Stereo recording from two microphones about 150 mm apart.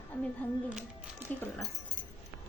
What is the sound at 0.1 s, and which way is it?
Speech, 10° left (ahead or behind).